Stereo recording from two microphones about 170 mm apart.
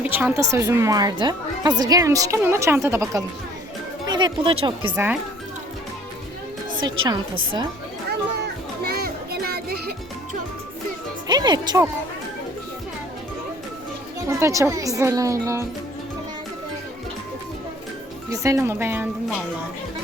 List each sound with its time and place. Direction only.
0.0 s a woman's voice: 10° right (ahead or behind); by 4.9 s 30° right (ahead or behind)
6.7 s speech: 25° right (ahead or behind)
8.8 s children playing: 65° right (ahead or behind)
11.3 s speech: 25° right (ahead or behind)
14.3 s speech: 15° right (ahead or behind)
18.3 s a woman's voice: 15° right (ahead or behind)